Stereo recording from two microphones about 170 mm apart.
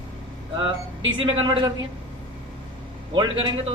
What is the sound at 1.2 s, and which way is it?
Speech, 30° right (ahead or behind).